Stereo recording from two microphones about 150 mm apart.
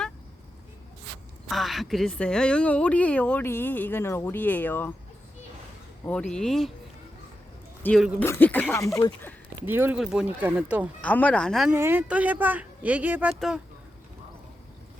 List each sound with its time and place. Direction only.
1.5 s a woman's voice: centre (ahead or behind)
6.1 s speech: 5° left (ahead or behind)
7.9 s speech: 5° right (ahead or behind)
8.2 s a woman's voice: 15° left (ahead or behind)
8.7 s speech: 20° left (ahead or behind)
9.6 s speech: 15° right (ahead or behind)
10.0 s speech: 5° right (ahead or behind)
11.0 s a woman's voice: 10° left (ahead or behind)
11.7 s speech: 15° right (ahead or behind)